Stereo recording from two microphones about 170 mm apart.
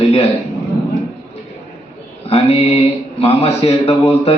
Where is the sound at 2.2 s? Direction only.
35° left (ahead or behind).